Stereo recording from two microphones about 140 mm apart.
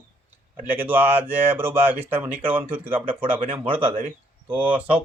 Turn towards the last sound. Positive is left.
turn(degrees=-40)  # may be behind; listen again after turning